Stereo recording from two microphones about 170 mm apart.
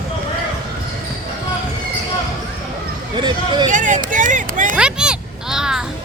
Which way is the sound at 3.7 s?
50° right (ahead or behind).